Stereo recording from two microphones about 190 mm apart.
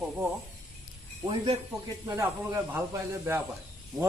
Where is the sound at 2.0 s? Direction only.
15° right (ahead or behind).